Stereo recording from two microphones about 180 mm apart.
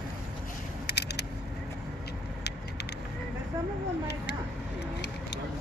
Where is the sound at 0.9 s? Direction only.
65° left (ahead or behind).